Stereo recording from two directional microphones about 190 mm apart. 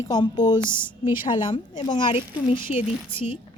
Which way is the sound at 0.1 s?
20° left (ahead or behind).